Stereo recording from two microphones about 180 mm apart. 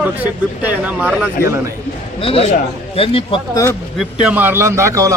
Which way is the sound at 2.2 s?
35° left (ahead or behind).